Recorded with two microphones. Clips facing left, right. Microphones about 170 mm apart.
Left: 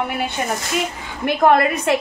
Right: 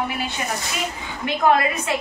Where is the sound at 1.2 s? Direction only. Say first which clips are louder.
Left 4 dB; 60° left (ahead or behind).